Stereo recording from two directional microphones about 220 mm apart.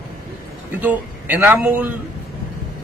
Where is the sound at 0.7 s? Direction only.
10° right (ahead or behind).